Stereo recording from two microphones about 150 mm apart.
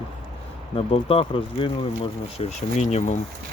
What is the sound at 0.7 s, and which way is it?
Speech, 40° left (ahead or behind).